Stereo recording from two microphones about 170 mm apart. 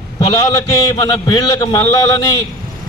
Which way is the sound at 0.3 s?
20° left (ahead or behind).